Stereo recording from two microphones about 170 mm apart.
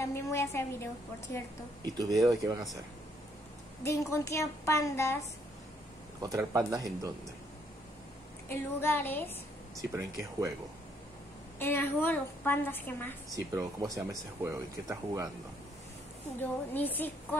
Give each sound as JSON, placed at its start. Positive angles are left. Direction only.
{"t": 0.0, "sound": "a woman's voice", "side_deg": 15}
{"t": 2.0, "sound": "speech", "side_deg": -20}
{"t": 3.8, "sound": "a woman's voice", "side_deg": 15}
{"t": 6.2, "sound": "speech", "side_deg": -20}
{"t": 8.5, "sound": "a woman's voice", "side_deg": 10}
{"t": 9.8, "sound": "speech", "side_deg": -20}
{"t": 11.6, "sound": "a woman's voice", "side_deg": 10}
{"t": 13.3, "sound": "speech", "side_deg": -20}
{"t": 16.7, "sound": "a woman's voice", "side_deg": 10}